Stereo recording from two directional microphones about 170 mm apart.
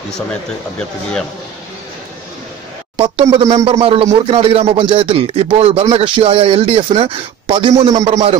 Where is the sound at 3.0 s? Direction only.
30° right (ahead or behind).